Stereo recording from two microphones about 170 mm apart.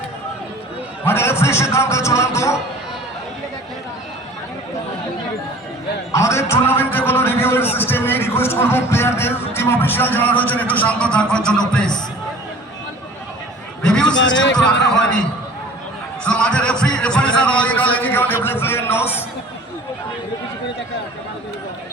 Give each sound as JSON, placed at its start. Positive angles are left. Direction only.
{"t": 1.0, "sound": "a man's voice", "side_deg": 15}
{"t": 6.1, "sound": "a sound", "side_deg": 15}
{"t": 7.8, "sound": "music", "side_deg": 10}
{"t": 11.7, "sound": "a man's voice", "side_deg": 5}
{"t": 13.8, "sound": "a sound", "side_deg": 5}
{"t": 14.2, "sound": "speech", "side_deg": 90}
{"t": 16.2, "sound": "a man's voice", "side_deg": 5}